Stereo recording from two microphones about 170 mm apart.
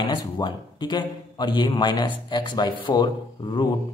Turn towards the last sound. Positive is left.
turn(degrees=25)  # may be behind; listen again after turning